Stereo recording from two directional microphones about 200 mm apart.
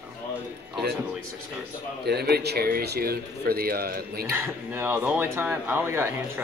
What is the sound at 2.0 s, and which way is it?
A man's voice, 55° right (ahead or behind).